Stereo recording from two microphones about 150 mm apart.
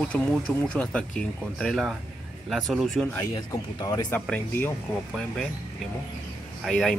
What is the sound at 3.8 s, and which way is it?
Speech, 25° left (ahead or behind).